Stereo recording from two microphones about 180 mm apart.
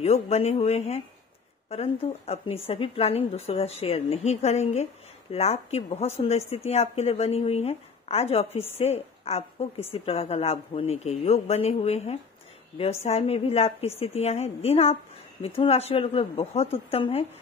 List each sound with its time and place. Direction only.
0.0 s speech: 35° left (ahead or behind)